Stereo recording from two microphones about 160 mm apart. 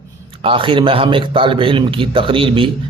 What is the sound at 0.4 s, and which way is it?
A man's voice, 30° right (ahead or behind).